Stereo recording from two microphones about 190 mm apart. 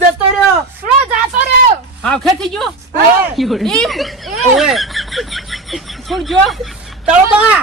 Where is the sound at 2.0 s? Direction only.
5° left (ahead or behind).